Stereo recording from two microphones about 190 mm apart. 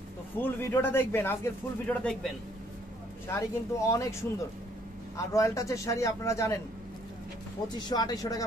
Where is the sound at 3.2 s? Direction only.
15° left (ahead or behind).